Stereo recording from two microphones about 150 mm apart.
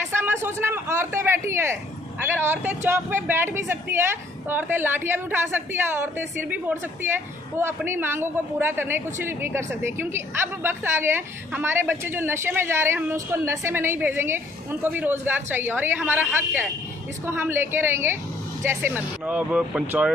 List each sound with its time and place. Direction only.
0.1 s a man's voice: 15° right (ahead or behind)